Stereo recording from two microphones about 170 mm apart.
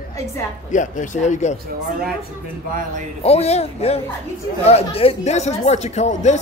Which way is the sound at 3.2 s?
40° left (ahead or behind).